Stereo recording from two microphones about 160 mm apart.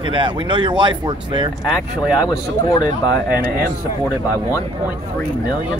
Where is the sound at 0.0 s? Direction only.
30° right (ahead or behind).